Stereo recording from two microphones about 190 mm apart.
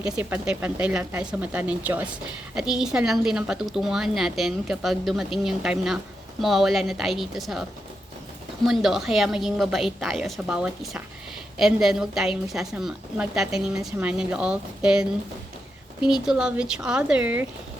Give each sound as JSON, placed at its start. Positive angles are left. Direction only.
{"t": 0.0, "sound": "a woman's voice", "side_deg": -5}
{"t": 8.6, "sound": "a woman's voice", "side_deg": 0}
{"t": 16.0, "sound": "a woman's voice", "side_deg": -5}